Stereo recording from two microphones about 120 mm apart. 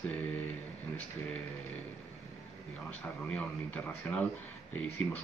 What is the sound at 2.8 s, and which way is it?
Speech, 10° left (ahead or behind).